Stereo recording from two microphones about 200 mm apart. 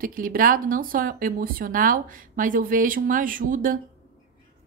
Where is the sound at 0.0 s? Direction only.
45° right (ahead or behind).